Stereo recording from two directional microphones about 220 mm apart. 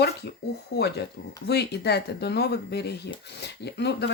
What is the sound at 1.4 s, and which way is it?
Speech, 50° left (ahead or behind).